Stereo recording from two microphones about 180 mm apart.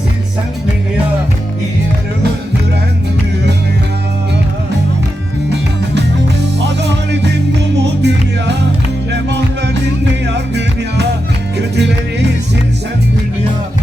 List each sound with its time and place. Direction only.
5.5 s music: 70° right (ahead or behind)